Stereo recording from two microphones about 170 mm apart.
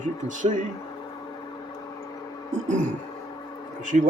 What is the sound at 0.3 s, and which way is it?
Speech, 50° right (ahead or behind).